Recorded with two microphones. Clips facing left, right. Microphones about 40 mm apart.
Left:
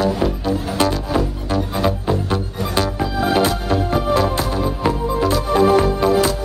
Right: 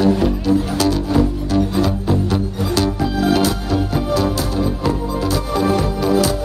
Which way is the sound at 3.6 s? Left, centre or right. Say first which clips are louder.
Left 1 dB; left.